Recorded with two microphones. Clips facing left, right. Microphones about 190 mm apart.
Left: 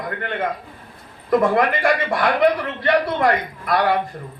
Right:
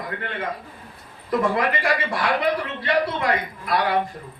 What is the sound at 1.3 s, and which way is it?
A man's voice, 50° left (ahead or behind).